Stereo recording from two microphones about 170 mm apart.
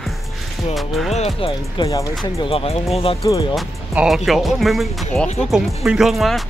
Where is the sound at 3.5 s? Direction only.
5° right (ahead or behind).